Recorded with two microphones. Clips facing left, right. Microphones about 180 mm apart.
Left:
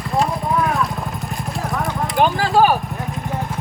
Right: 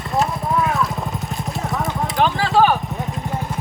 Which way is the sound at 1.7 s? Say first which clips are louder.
Left 2 dB; centre (ahead or behind).